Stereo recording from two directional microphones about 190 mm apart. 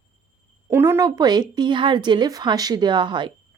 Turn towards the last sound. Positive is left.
turn(degrees=-25)  # may be behind; listen again after turning